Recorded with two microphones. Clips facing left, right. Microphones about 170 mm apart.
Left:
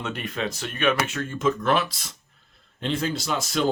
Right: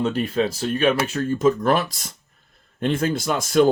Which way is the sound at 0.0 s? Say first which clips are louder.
Right 8 dB; 30° right (ahead or behind).